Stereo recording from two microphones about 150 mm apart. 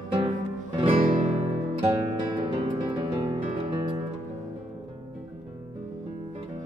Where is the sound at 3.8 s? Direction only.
30° right (ahead or behind).